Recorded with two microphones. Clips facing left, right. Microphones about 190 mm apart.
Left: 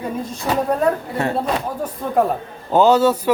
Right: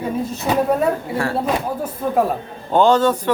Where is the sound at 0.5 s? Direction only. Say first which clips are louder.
Right 2 dB; 20° right (ahead or behind).